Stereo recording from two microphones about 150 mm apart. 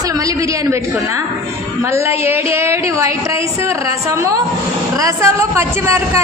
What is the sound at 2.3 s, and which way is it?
Speech, 15° right (ahead or behind).